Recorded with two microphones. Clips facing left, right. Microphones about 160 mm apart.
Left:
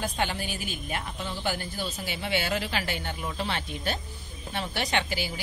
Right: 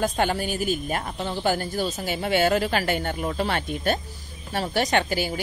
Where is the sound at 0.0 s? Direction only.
45° right (ahead or behind).